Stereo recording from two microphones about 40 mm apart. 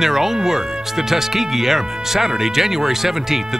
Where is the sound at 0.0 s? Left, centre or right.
Centre.